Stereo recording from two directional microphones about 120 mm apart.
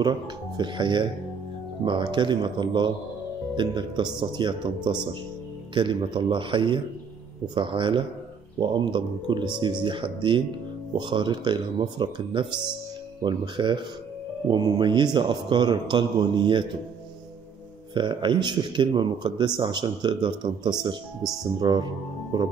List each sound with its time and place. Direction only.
0.0 s a man's voice: 40° right (ahead or behind)
17.9 s speech: 40° right (ahead or behind)